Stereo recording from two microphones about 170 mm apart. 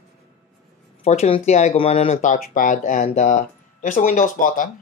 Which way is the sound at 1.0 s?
40° left (ahead or behind).